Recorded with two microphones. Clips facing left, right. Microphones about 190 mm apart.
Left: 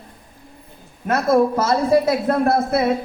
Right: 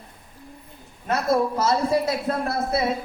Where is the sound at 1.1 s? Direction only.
55° left (ahead or behind).